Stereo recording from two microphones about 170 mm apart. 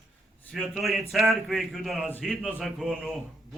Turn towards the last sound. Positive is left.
turn(degrees=0)  # may be behind; listen again after turning